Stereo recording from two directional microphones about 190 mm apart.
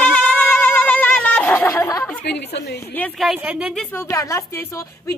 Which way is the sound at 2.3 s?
65° left (ahead or behind).